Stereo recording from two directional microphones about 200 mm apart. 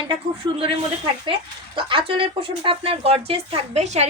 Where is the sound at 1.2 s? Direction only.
25° right (ahead or behind).